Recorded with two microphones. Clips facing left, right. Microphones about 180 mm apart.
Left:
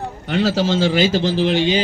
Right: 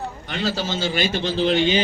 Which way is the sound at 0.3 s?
80° left.